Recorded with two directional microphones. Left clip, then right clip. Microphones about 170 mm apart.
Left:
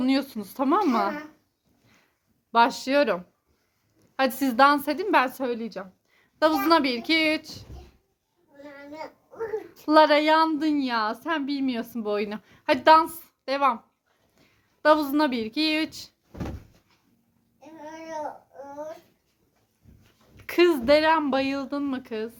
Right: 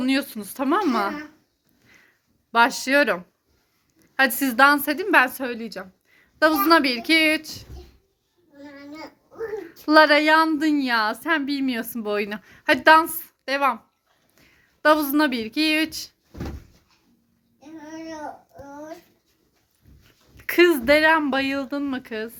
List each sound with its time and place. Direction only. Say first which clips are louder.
0.0 s speech: right 2 dB; 10° left (ahead or behind)
2.5 s a woman's voice: right 2 dB; centre (ahead or behind)
9.6 s a woman's voice: right 3 dB; 5° right (ahead or behind)
20.3 s a woman's voice: right 4 dB; 5° right (ahead or behind)